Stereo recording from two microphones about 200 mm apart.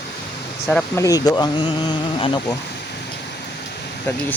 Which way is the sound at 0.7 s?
10° left (ahead or behind).